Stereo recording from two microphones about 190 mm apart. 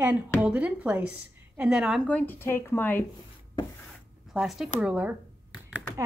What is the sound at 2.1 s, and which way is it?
Speech, 10° left (ahead or behind).